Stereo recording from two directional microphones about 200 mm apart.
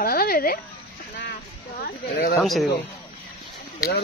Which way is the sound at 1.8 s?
50° left (ahead or behind).